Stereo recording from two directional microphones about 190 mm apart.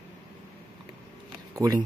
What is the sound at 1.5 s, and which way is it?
Speech, 20° right (ahead or behind).